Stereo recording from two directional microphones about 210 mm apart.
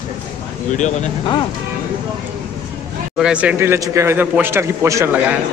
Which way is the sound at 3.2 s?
5° right (ahead or behind).